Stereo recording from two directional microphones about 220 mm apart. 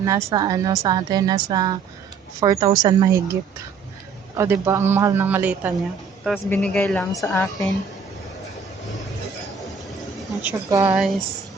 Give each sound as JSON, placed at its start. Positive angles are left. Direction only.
{"t": 0.0, "sound": "speech", "side_deg": -15}
{"t": 4.4, "sound": "speech", "side_deg": -10}
{"t": 6.2, "sound": "speech", "side_deg": 5}
{"t": 10.7, "sound": "speech", "side_deg": -15}
{"t": 10.9, "sound": "speech", "side_deg": 0}